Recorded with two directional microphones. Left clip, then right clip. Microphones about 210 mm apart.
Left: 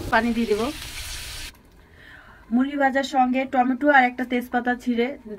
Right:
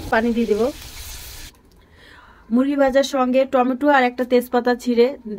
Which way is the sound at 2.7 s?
55° right (ahead or behind).